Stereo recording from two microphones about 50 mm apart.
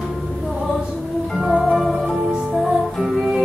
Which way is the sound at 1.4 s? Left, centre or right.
Centre.